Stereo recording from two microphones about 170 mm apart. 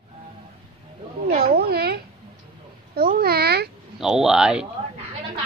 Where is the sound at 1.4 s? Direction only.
65° right (ahead or behind).